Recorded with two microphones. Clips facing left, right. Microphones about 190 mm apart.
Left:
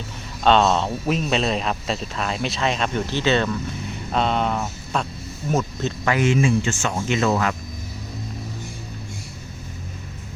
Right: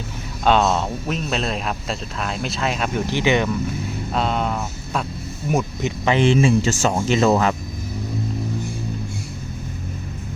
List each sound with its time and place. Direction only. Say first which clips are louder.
0.4 s speech: left 1 dB; 5° right (ahead or behind)
4.1 s a sound: left 1 dB; 5° right (ahead or behind)
5.5 s speech: right 1 dB; 10° right (ahead or behind)
6.1 s speech: right 3 dB; 30° right (ahead or behind)